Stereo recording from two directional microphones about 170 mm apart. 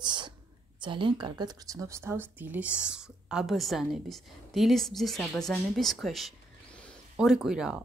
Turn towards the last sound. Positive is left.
turn(degrees=-5)  # may be behind; listen again after turning